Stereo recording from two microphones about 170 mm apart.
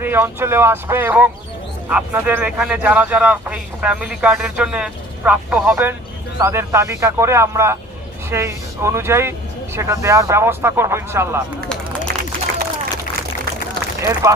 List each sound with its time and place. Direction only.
0.0 s a man's voice: 10° right (ahead or behind)
14.0 s a man's voice: 20° right (ahead or behind)